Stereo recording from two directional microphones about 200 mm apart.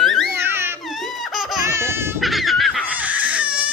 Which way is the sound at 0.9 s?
Centre (ahead or behind).